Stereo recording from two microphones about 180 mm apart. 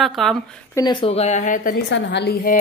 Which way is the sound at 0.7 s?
25° left (ahead or behind).